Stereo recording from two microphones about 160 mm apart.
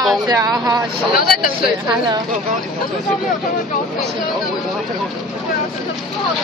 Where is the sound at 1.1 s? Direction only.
65° left (ahead or behind).